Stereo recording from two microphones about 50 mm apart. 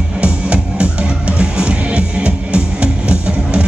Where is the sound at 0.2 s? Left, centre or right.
Right.